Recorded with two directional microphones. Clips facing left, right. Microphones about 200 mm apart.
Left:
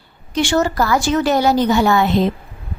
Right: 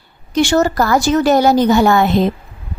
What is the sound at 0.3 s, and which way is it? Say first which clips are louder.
A woman's voice: right 3 dB; 40° right (ahead or behind).